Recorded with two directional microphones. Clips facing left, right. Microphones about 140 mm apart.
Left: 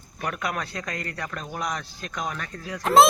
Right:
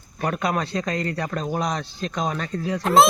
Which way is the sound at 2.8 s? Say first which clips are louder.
Even; centre (ahead or behind).